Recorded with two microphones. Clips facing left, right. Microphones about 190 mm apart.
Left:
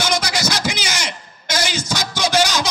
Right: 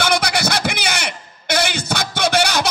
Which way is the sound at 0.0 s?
60° right (ahead or behind).